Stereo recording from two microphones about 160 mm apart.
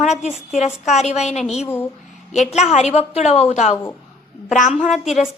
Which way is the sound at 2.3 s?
45° left (ahead or behind).